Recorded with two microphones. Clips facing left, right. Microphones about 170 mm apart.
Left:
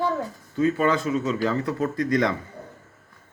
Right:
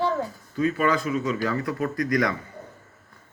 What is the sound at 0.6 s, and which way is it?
Speech, 25° left (ahead or behind).